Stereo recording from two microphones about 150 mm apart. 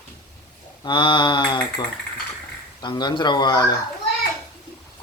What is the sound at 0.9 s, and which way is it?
Mantra, 35° left (ahead or behind).